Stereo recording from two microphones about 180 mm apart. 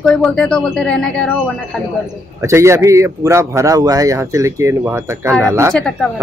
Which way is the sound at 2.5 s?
15° right (ahead or behind).